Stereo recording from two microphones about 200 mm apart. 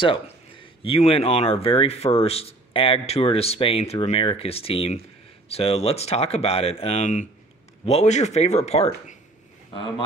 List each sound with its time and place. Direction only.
0.0 s speech: 25° left (ahead or behind)